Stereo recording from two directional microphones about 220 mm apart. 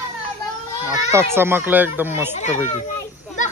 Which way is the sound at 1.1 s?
10° right (ahead or behind).